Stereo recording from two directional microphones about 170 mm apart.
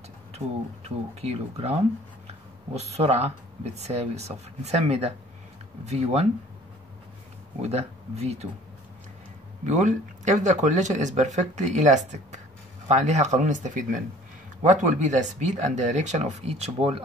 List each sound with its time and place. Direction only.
0.8 s speech: 40° right (ahead or behind)
7.6 s speech: 40° right (ahead or behind)
9.7 s speech: 45° right (ahead or behind)